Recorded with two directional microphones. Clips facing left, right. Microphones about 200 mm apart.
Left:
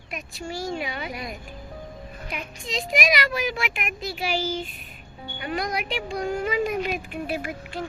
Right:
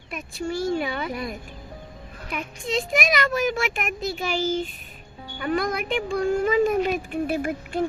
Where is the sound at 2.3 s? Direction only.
50° right (ahead or behind).